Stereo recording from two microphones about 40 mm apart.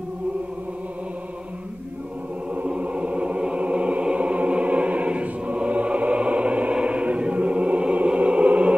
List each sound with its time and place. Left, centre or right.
2.5 s music: right